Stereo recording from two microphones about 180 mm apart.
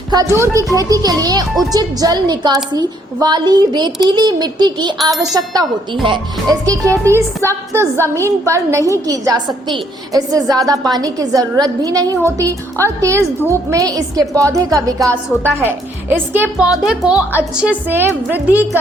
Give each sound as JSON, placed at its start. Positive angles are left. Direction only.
{"t": 0.1, "sound": "a woman's voice", "side_deg": -15}